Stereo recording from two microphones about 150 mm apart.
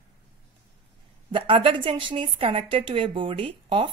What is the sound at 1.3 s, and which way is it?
A woman's voice, 35° right (ahead or behind).